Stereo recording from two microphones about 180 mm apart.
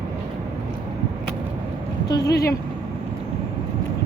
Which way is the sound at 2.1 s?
20° left (ahead or behind).